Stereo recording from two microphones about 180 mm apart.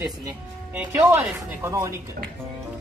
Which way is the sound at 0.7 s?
10° right (ahead or behind).